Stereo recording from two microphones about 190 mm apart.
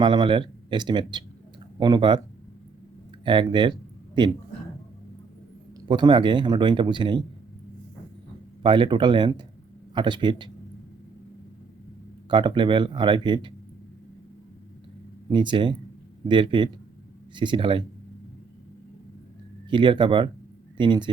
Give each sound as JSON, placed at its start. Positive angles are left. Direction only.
{"t": 0.0, "sound": "speech", "side_deg": -25}
{"t": 3.2, "sound": "speech", "side_deg": -25}
{"t": 5.9, "sound": "speech", "side_deg": -25}
{"t": 8.6, "sound": "speech", "side_deg": -25}
{"t": 12.3, "sound": "speech", "side_deg": -25}
{"t": 15.3, "sound": "speech", "side_deg": -25}
{"t": 19.7, "sound": "speech", "side_deg": -25}